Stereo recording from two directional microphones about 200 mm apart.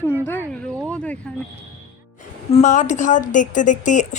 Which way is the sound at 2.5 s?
35° left (ahead or behind).